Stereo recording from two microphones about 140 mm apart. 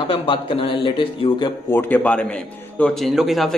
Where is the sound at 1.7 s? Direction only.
15° left (ahead or behind).